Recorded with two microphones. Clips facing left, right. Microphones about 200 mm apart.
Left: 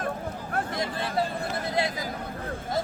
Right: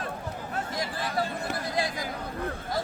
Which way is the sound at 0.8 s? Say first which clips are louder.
Left 1 dB; 25° left (ahead or behind).